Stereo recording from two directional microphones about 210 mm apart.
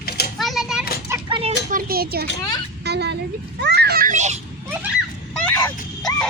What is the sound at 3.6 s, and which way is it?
Children playing, 50° right (ahead or behind).